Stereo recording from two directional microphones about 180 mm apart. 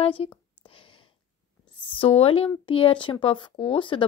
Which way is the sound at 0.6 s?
30° left (ahead or behind).